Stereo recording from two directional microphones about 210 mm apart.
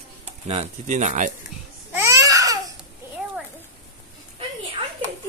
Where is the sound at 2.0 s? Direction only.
15° right (ahead or behind).